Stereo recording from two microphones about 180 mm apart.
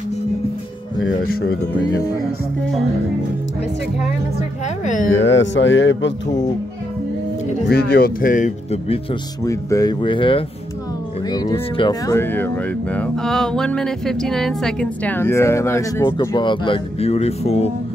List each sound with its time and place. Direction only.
1.1 s speech: 60° left (ahead or behind)
5.2 s speech: 85° left
7.6 s speech: 60° left (ahead or behind); by 9.0 s 40° left (ahead or behind)
9.4 s speech: 20° left (ahead or behind); by 17.6 s 35° left (ahead or behind)